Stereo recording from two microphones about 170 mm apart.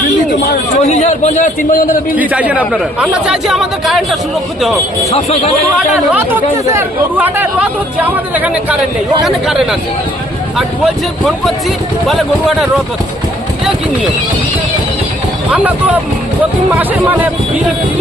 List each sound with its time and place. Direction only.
0.9 s a man's voice: 45° left (ahead or behind)
2.1 s speech: 10° right (ahead or behind)
5.1 s speech: 35° left (ahead or behind)
6.1 s speech: 10° right (ahead or behind)
15.5 s speech: 10° right (ahead or behind)